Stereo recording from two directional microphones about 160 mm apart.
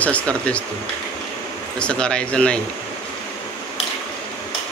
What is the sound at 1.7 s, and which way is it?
Speech, 5° left (ahead or behind).